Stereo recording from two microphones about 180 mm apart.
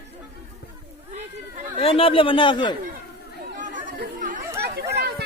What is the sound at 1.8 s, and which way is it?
Speech, 30° left (ahead or behind).